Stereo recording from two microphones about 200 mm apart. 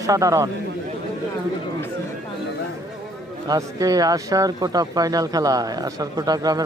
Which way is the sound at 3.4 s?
20° right (ahead or behind).